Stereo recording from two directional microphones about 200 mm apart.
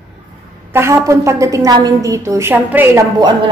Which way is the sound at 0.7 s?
15° right (ahead or behind).